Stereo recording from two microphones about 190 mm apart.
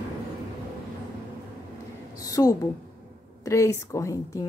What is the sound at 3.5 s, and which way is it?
A woman's voice, 15° left (ahead or behind).